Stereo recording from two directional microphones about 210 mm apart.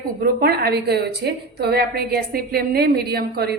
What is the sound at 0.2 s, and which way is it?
A woman's voice, 45° right (ahead or behind).